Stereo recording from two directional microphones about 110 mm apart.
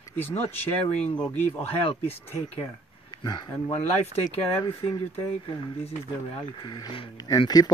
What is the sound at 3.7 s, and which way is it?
Speech, 70° left (ahead or behind).